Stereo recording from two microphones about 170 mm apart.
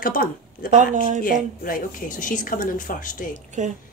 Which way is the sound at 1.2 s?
55° left (ahead or behind).